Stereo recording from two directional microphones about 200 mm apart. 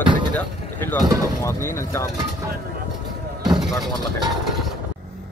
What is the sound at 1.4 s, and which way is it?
Speech, 15° left (ahead or behind).